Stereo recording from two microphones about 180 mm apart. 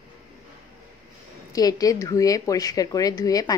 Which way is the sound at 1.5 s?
20° left (ahead or behind).